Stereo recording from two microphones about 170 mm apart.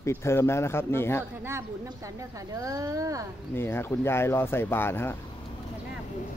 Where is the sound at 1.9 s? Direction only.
20° right (ahead or behind).